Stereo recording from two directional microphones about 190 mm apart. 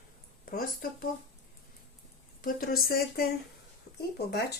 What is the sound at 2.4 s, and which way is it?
Speech, 50° left (ahead or behind).